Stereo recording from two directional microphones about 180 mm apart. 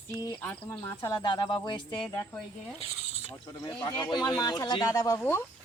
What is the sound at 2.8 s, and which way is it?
Speech, 35° left (ahead or behind).